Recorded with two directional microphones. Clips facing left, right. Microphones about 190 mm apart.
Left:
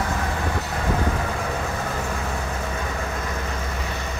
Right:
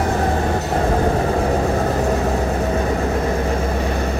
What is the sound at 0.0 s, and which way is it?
Train, 40° right (ahead or behind).